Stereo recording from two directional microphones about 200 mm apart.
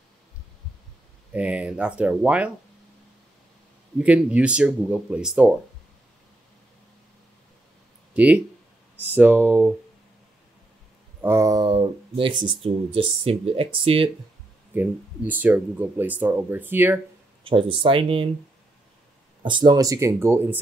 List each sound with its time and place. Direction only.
1.3 s speech: 5° right (ahead or behind)
4.0 s speech: 5° right (ahead or behind)
8.1 s speech: 5° right (ahead or behind)
11.1 s speech: 10° right (ahead or behind); by 14.1 s 25° right (ahead or behind)
14.7 s speech: 10° right (ahead or behind)
17.4 s speech: 25° right (ahead or behind)
19.4 s speech: 20° right (ahead or behind)